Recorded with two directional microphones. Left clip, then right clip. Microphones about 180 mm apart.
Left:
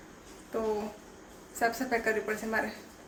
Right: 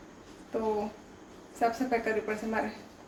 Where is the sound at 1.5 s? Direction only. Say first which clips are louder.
Right 1 dB; centre (ahead or behind).